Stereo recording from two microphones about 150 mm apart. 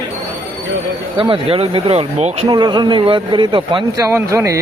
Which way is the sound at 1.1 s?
35° right (ahead or behind).